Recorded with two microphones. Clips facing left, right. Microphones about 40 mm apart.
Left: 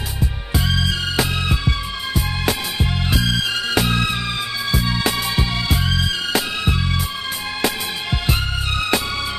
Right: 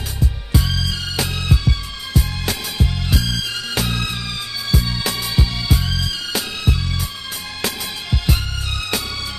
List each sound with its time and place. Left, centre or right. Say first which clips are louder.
0.2 s music: right 1 dB; centre
2.4 s music: left 2 dB; left